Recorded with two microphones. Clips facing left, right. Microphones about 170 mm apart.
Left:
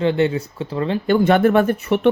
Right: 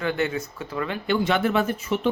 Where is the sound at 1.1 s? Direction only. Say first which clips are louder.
Left 8 dB; 50° left (ahead or behind).